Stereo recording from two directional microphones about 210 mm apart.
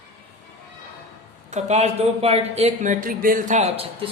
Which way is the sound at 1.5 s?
30° right (ahead or behind).